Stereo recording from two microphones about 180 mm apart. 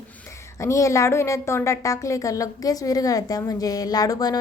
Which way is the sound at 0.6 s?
15° left (ahead or behind).